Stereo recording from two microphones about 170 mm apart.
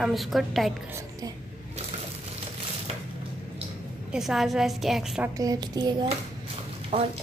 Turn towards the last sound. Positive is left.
turn(degrees=-35)  # may be behind; listen again after turning